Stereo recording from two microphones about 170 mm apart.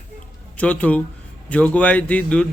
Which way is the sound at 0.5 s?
10° left (ahead or behind).